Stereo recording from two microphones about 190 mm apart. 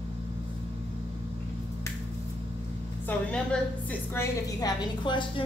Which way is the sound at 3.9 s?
15° left (ahead or behind).